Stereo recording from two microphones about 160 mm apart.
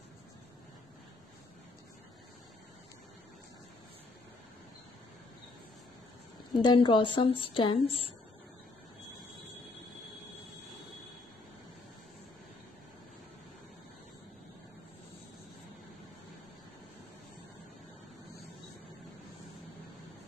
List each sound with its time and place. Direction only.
6.5 s a woman's voice: 30° left (ahead or behind)